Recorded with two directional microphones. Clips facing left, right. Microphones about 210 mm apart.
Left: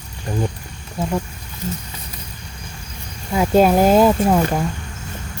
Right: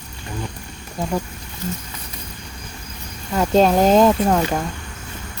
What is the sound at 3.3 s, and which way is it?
Speech, 10° left (ahead or behind).